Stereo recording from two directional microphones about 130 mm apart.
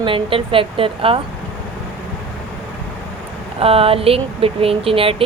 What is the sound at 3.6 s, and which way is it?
Speech, 45° right (ahead or behind).